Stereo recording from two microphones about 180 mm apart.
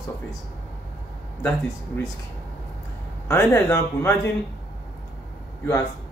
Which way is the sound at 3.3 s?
15° left (ahead or behind).